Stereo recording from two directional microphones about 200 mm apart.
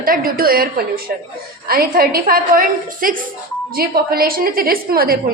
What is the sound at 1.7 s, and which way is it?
A woman's voice, 50° right (ahead or behind).